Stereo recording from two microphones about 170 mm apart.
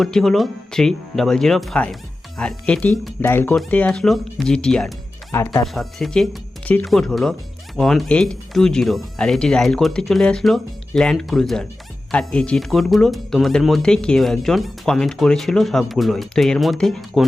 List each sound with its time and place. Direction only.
0.0 s speech: 5° left (ahead or behind)
5.7 s speech: centre (ahead or behind)